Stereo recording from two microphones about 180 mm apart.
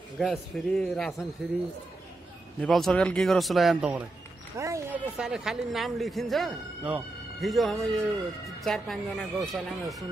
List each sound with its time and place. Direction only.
0.2 s a man's voice: centre (ahead or behind)
2.6 s a man's voice: 5° left (ahead or behind)
4.6 s speech: 15° right (ahead or behind)
5.1 s a man's voice: 5° right (ahead or behind)